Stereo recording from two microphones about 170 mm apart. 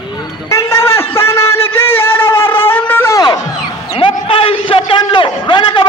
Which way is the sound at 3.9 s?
30° left (ahead or behind).